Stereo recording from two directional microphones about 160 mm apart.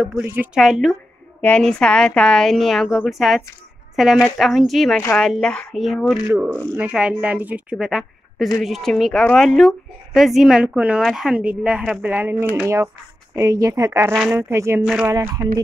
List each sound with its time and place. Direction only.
0.2 s a woman's voice: 15° right (ahead or behind)
0.6 s a woman's voice: centre (ahead or behind); by 14.8 s 15° right (ahead or behind)
14.8 s a woman's voice: 5° right (ahead or behind)
15.0 s speech: 20° right (ahead or behind)